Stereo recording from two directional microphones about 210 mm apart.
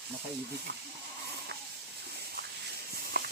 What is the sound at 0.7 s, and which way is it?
Goat, 55° right (ahead or behind).